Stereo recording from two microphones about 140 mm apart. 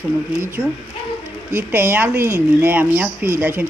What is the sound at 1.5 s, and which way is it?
Speech, 15° right (ahead or behind).